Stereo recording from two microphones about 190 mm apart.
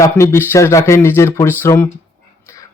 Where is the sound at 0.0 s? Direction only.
15° left (ahead or behind).